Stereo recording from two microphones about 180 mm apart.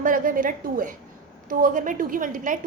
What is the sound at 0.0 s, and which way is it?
A woman's voice, 50° right (ahead or behind).